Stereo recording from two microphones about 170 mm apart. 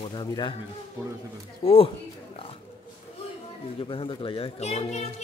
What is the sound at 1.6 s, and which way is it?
Speech, 35° left (ahead or behind).